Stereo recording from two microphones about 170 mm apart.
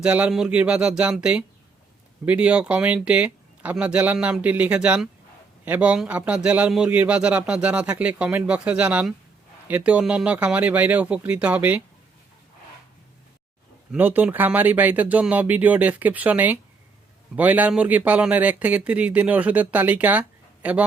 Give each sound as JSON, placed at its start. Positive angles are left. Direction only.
{"t": 0.0, "sound": "a man's voice", "side_deg": -5}
{"t": 13.9, "sound": "a man's voice", "side_deg": -10}